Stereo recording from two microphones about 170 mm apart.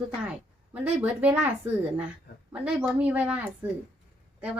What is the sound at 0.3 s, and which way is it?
A woman's voice, 10° right (ahead or behind).